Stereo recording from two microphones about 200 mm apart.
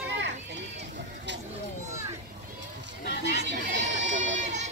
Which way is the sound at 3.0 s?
60° left (ahead or behind).